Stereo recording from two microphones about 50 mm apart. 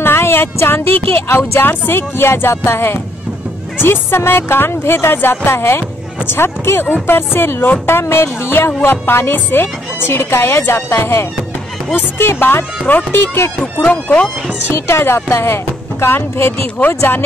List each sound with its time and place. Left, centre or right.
0.0 s a sound: left
0.9 s speech: left
13.8 s speech: left
14.7 s speech: left